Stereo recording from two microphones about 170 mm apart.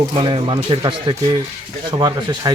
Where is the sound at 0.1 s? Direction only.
30° right (ahead or behind).